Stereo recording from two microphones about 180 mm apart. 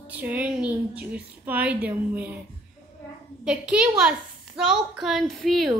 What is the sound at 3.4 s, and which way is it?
A woman's voice, 5° right (ahead or behind).